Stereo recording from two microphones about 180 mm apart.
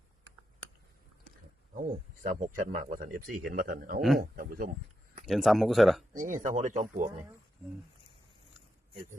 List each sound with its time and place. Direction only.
2.3 s speech: 45° right (ahead or behind)
5.2 s speech: centre (ahead or behind)
6.1 s speech: 45° right (ahead or behind)